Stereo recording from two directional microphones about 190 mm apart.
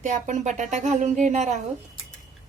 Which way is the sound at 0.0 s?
40° right (ahead or behind).